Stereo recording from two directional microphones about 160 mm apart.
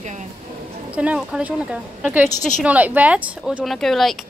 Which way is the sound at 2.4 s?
50° left (ahead or behind).